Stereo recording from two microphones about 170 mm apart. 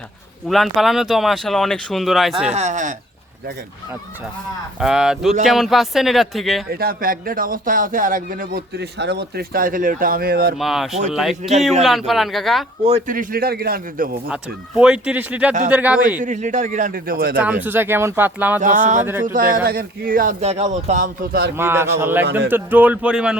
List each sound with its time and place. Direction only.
0.4 s speech: centre (ahead or behind)
2.5 s speech: 40° right (ahead or behind)
4.8 s speech: 5° right (ahead or behind)
6.7 s speech: 60° right (ahead or behind)
10.6 s speech: centre (ahead or behind)
12.8 s speech: 45° right (ahead or behind)
14.8 s speech: 5° right (ahead or behind)
16.2 s speech: 45° right (ahead or behind); by 17.3 s 60° right (ahead or behind)
17.3 s speech: 10° right (ahead or behind)
18.6 s speech: 50° right (ahead or behind)
20.4 s speech: 40° right (ahead or behind); by 21.5 s 60° right (ahead or behind)
21.6 s speech: 15° right (ahead or behind)